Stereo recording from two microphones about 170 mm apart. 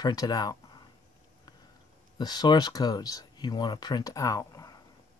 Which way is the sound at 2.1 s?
25° left (ahead or behind).